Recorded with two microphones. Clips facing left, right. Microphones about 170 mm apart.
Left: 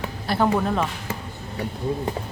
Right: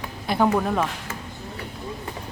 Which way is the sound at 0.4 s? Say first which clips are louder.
Even; 5° right (ahead or behind).